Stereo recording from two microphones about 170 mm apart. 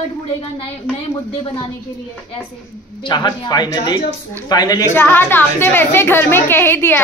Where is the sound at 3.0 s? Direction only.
25° left (ahead or behind).